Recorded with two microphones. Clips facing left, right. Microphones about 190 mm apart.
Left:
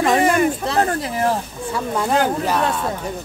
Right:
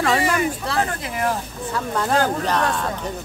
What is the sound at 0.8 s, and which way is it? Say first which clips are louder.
Speech: left 5 dB; 35° left (ahead or behind).